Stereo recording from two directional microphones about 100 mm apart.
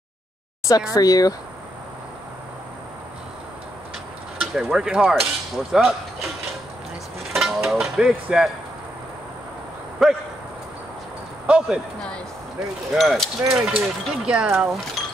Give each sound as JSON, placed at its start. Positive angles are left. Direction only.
{"t": 0.7, "sound": "speech", "side_deg": 35}
{"t": 4.4, "sound": "speech", "side_deg": -5}
{"t": 7.3, "sound": "mechanisms", "side_deg": 0}
{"t": 10.0, "sound": "speech", "side_deg": 0}
{"t": 11.4, "sound": "speech", "side_deg": -10}
{"t": 12.9, "sound": "speech", "side_deg": 0}